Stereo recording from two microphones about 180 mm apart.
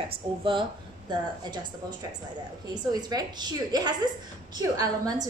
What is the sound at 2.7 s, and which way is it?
A woman's voice, 20° right (ahead or behind).